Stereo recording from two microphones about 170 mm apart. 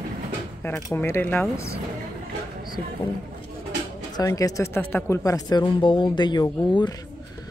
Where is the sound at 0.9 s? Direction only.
15° left (ahead or behind).